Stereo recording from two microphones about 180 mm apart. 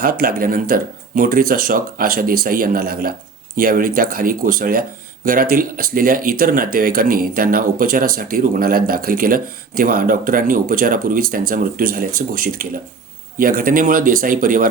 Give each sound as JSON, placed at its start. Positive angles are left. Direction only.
{"t": 0.0, "sound": "speech", "side_deg": -55}